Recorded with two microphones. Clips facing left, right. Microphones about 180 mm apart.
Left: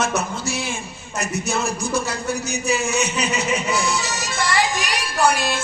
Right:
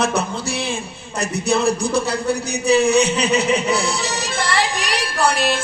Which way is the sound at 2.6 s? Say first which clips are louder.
Right 8 dB; 35° right (ahead or behind).